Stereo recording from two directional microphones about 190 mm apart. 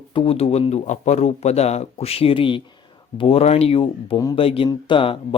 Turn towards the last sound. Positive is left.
turn(degrees=25)  # may be behind; listen again after turning